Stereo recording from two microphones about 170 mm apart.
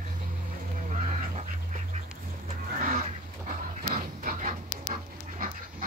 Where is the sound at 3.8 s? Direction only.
55° right (ahead or behind).